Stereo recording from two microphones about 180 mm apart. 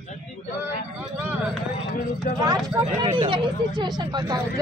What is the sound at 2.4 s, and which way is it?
Speech, 20° right (ahead or behind).